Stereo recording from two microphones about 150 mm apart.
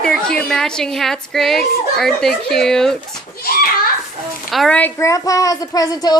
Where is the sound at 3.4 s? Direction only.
85° left.